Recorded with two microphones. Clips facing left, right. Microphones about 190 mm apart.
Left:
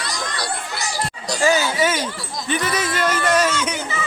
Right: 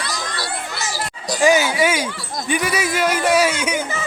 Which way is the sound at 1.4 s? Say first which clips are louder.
Right 3 dB; 15° right (ahead or behind).